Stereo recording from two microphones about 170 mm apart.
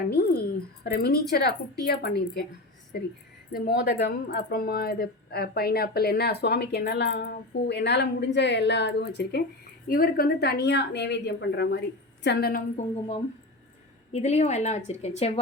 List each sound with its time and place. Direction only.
0.1 s a sound: 65° left (ahead or behind)
0.9 s a woman's voice: 65° left (ahead or behind)
9.8 s a woman's voice: 60° left (ahead or behind)
14.1 s a woman's voice: 40° left (ahead or behind)